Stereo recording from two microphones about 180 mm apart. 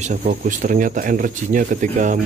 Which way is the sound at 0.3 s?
45° right (ahead or behind).